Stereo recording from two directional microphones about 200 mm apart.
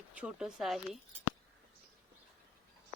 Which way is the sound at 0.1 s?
5° right (ahead or behind).